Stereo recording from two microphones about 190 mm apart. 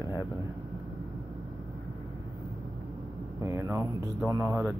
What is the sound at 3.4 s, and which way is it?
Speech, 15° right (ahead or behind).